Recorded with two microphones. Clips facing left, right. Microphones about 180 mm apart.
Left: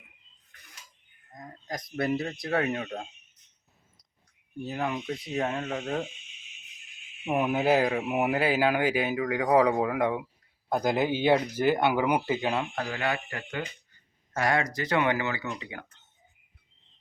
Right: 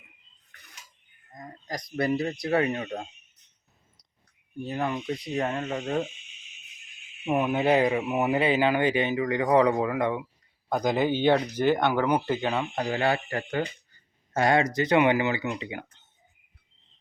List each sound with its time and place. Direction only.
1.3 s a sound: centre (ahead or behind)
2.0 s speech: centre (ahead or behind)
4.6 s speech: centre (ahead or behind)
7.3 s speech: 5° left (ahead or behind)
12.9 s speech: 30° right (ahead or behind)
14.3 s speech: 25° right (ahead or behind)